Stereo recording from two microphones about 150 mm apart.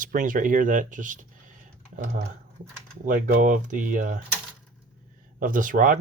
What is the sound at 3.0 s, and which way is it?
Speech, 60° right (ahead or behind).